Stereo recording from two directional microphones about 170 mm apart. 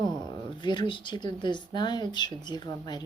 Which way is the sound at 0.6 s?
25° left (ahead or behind).